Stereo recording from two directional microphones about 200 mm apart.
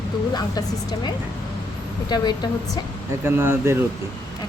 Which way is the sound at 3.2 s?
10° right (ahead or behind).